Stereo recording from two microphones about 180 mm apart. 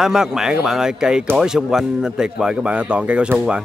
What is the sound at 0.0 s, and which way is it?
Speech, 5° right (ahead or behind).